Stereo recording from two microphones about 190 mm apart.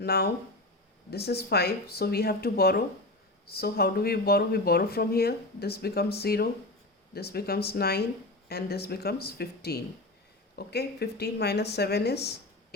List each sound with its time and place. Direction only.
0.0 s speech: 55° left (ahead or behind)